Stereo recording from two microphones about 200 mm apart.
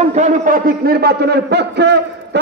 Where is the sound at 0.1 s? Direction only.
40° right (ahead or behind).